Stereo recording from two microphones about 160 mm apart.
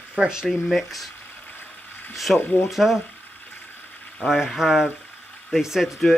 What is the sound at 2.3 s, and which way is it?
Speech, 10° left (ahead or behind).